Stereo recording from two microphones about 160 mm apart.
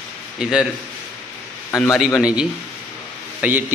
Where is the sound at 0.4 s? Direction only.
5° right (ahead or behind).